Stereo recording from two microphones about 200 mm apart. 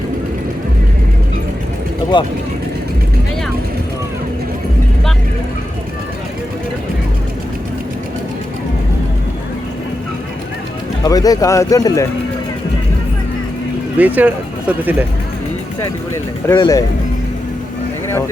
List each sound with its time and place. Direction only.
2.1 s speech: 25° left (ahead or behind)
11.0 s speech: 20° left (ahead or behind)
14.0 s speech: 5° right (ahead or behind)
16.6 s speech: 20° left (ahead or behind)